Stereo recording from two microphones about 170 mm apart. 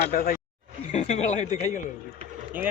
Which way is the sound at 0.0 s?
55° left (ahead or behind).